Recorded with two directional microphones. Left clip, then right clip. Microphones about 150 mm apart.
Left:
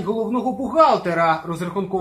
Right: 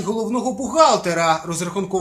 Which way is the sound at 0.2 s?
30° right (ahead or behind).